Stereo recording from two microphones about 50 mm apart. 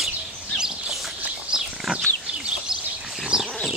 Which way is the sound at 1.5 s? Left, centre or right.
Centre.